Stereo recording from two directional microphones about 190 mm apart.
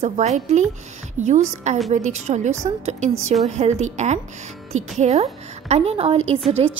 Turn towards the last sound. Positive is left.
turn(degrees=-30)  # may be behind; listen again after turning